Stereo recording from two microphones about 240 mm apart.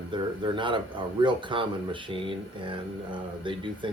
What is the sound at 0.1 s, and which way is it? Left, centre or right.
Speech, centre.